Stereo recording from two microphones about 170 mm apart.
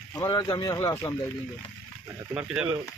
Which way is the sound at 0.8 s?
10° left (ahead or behind).